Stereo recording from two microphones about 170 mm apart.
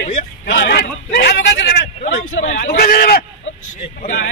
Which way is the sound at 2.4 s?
45° left (ahead or behind).